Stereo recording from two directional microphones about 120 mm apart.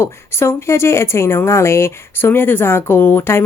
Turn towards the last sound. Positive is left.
turn(degrees=20)  # may be behind; listen again after turning